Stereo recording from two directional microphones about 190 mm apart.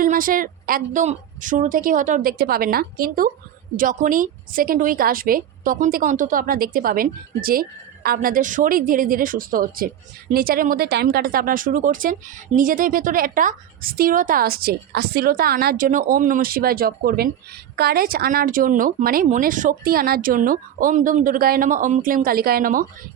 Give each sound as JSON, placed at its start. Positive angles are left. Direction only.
{"t": 0.0, "sound": "a woman's voice", "side_deg": -45}